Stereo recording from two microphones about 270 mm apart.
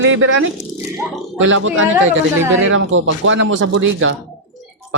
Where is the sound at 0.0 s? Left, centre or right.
Right.